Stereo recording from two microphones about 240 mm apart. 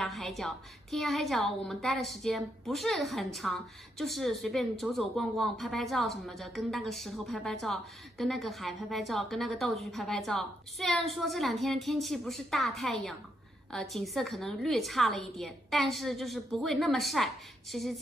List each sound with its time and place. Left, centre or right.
0.0 s a woman's voice: centre